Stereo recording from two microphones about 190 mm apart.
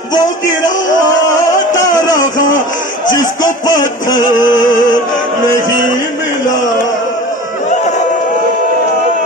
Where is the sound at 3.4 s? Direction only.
20° left (ahead or behind).